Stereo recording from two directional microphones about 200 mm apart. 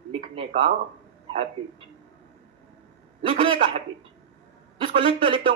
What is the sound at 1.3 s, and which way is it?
Speech, 30° right (ahead or behind).